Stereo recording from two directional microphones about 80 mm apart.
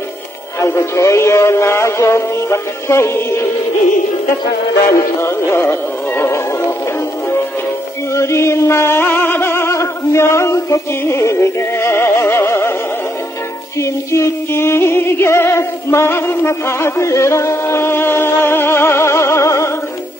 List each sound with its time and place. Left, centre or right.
0.6 s music: left
5.2 s music: left
8.1 s music: left
13.7 s music: left